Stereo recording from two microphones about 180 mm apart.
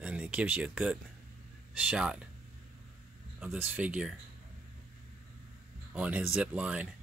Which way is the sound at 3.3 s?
5° right (ahead or behind).